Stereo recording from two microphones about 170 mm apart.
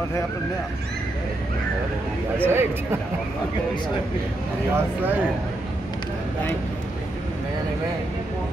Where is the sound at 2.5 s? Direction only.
15° right (ahead or behind).